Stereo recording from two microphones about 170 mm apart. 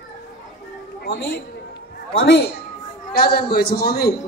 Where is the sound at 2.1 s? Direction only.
80° left.